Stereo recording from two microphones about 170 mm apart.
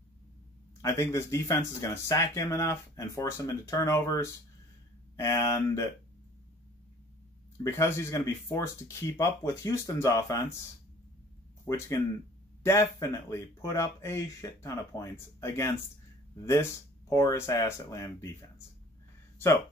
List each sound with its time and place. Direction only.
0.8 s speech: 15° left (ahead or behind)
7.6 s speech: 15° left (ahead or behind)
11.6 s speech: 20° left (ahead or behind)
17.1 s speech: 20° left (ahead or behind)
19.3 s a sound: 15° left (ahead or behind)